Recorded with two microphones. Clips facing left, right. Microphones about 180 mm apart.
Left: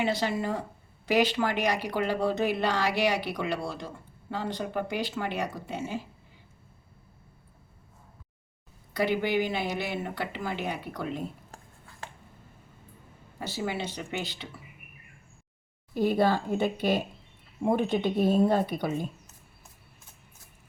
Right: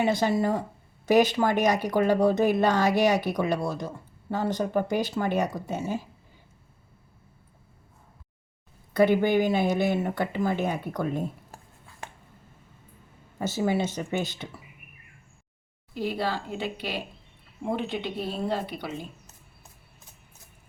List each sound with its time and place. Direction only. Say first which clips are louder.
0.1 s a woman's voice: right 5 dB; 45° right (ahead or behind)
8.9 s a woman's voice: right 6 dB; 50° right (ahead or behind)
13.4 s a woman's voice: right 6 dB; 45° right (ahead or behind)
16.0 s speech: left 5 dB; 50° left (ahead or behind)